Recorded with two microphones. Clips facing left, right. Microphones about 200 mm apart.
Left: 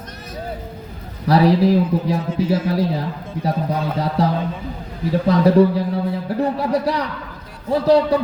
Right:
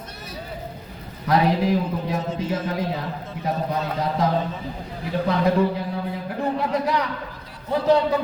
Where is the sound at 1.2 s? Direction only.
35° left (ahead or behind).